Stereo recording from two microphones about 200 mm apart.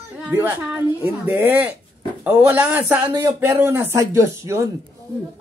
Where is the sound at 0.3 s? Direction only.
10° right (ahead or behind).